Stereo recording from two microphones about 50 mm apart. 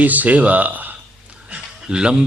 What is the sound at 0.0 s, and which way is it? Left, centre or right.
A man's voice, right.